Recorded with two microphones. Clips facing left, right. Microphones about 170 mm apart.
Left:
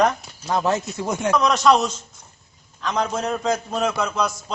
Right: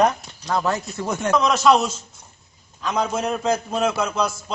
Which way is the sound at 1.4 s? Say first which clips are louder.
Right 1 dB; centre (ahead or behind).